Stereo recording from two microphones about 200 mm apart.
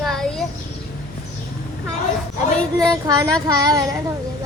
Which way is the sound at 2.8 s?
20° right (ahead or behind).